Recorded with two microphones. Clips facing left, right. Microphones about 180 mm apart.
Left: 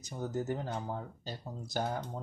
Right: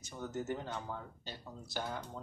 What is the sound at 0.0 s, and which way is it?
Speech, 35° left (ahead or behind).